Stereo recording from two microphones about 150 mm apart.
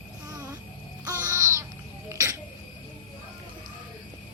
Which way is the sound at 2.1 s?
20° right (ahead or behind).